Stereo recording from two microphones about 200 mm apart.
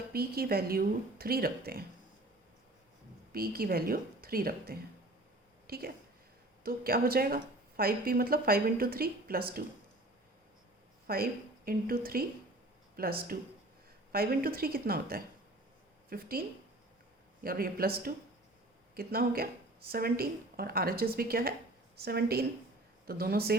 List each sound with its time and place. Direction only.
0.1 s speech: 50° right (ahead or behind)
3.3 s a woman's voice: 50° right (ahead or behind)
11.0 s a woman's voice: 50° right (ahead or behind)
17.4 s speech: 45° right (ahead or behind)